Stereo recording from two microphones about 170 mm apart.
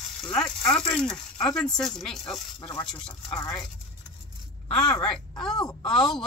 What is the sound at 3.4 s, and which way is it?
Speech, 20° left (ahead or behind).